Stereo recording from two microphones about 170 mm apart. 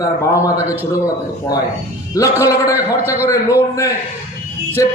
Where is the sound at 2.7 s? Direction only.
10° right (ahead or behind).